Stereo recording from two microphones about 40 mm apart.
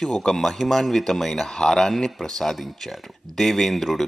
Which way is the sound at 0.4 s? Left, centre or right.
Centre.